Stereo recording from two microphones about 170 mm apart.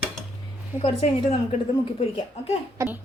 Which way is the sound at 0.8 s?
35° left (ahead or behind).